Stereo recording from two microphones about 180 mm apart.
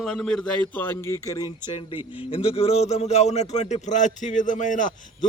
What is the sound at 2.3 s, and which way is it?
A man's voice, 30° left (ahead or behind).